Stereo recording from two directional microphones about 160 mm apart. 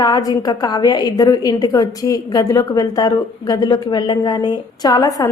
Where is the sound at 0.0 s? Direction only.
25° left (ahead or behind).